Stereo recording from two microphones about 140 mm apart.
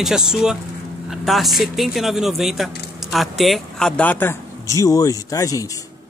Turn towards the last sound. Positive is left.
turn(degrees=25)  # may be behind; listen again after turning